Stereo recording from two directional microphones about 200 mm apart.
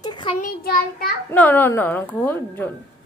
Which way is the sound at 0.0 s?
25° left (ahead or behind).